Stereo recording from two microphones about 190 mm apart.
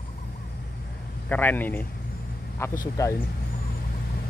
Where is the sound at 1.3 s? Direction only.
10° left (ahead or behind).